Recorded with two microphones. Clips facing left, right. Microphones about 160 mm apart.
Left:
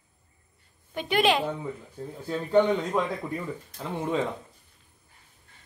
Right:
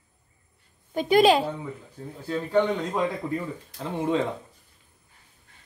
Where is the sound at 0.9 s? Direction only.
40° right (ahead or behind).